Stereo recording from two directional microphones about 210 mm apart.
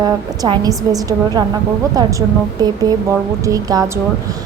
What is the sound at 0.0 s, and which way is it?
A woman's voice, 20° right (ahead or behind).